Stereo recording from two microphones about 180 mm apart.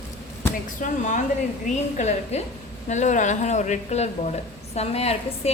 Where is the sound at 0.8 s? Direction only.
45° left (ahead or behind).